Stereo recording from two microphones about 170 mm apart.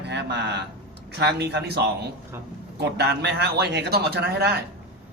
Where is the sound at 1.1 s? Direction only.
75° right (ahead or behind).